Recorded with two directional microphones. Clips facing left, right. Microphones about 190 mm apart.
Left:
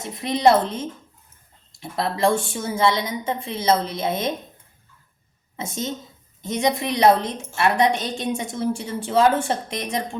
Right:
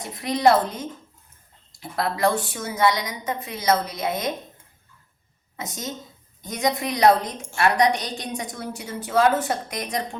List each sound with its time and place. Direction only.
0.0 s a woman's voice: 25° left (ahead or behind)
5.5 s a woman's voice: 25° left (ahead or behind)